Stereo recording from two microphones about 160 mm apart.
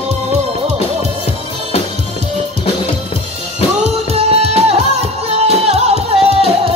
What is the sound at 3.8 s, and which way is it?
Music, 40° right (ahead or behind).